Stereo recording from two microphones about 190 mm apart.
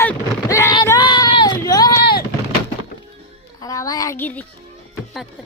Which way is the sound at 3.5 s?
20° left (ahead or behind).